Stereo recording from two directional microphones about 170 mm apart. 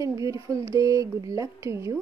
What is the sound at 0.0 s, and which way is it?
A woman's voice, 20° right (ahead or behind).